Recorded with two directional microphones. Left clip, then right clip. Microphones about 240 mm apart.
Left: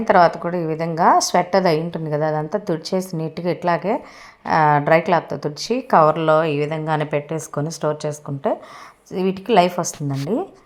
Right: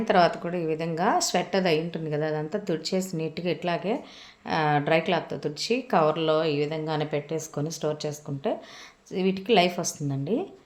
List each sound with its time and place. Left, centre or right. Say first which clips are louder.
0.0 s a woman's voice: left 7 dB; centre